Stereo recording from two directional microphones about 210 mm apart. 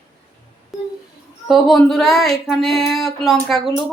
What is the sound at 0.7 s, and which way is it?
Speech, centre (ahead or behind).